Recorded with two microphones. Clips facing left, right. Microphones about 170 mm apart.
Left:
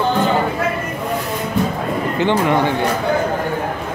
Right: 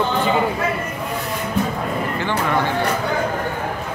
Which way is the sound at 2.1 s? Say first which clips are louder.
Left 6 dB; 20° left (ahead or behind).